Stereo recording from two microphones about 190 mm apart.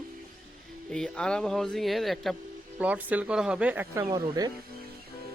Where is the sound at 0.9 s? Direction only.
5° left (ahead or behind); by 4.5 s 20° right (ahead or behind).